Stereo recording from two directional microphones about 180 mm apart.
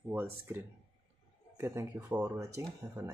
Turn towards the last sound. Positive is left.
turn(degrees=-15)  # may be behind; listen again after turning